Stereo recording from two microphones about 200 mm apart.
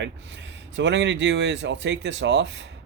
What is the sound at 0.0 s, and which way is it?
Speech, 60° right (ahead or behind).